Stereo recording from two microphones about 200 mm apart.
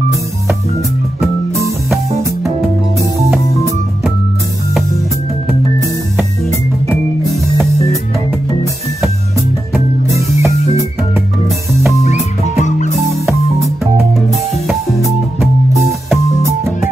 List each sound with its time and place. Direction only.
3.0 s music: 15° right (ahead or behind)
9.7 s music: 15° right (ahead or behind)
12.0 s music: 35° left (ahead or behind)
13.2 s music: 15° right (ahead or behind)
16.4 s music: 15° right (ahead or behind)